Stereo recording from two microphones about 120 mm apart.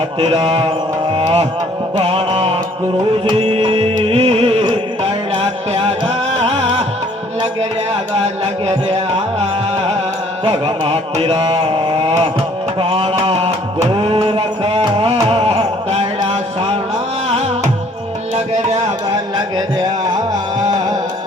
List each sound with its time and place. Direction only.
0.2 s speech: 55° right (ahead or behind)
1.1 s music: 60° right (ahead or behind)
2.0 s mantra: 55° right (ahead or behind)
3.3 s music: 50° right (ahead or behind)
8.1 s music: 60° right (ahead or behind)
10.4 s speech: 55° right (ahead or behind)
12.8 s music: 55° right (ahead or behind)
13.9 s a sound: 50° right (ahead or behind)
17.2 s music: 60° right (ahead or behind)
18.3 s tabla: 65° right (ahead or behind)
20.6 s music: 30° right (ahead or behind)